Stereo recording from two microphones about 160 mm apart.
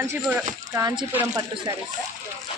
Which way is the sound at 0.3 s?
10° right (ahead or behind).